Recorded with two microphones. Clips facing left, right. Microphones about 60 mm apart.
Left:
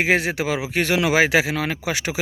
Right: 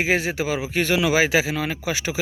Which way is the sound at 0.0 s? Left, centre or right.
Left.